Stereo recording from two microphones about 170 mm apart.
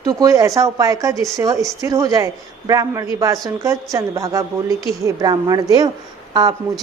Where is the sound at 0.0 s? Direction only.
20° right (ahead or behind).